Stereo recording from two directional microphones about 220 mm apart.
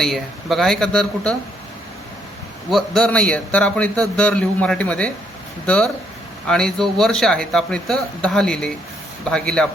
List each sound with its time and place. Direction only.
0.0 s speech: centre (ahead or behind)
2.6 s speech: centre (ahead or behind)